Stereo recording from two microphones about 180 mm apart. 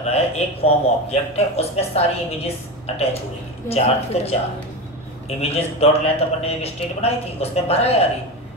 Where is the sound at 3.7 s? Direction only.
35° left (ahead or behind).